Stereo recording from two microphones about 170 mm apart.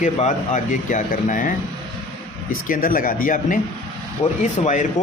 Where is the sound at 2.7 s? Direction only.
55° left (ahead or behind).